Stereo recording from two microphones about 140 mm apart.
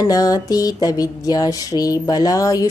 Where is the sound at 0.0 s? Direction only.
25° left (ahead or behind).